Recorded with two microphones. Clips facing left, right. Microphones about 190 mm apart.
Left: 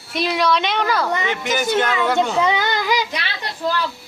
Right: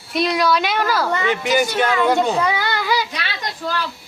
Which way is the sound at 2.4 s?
20° left (ahead or behind).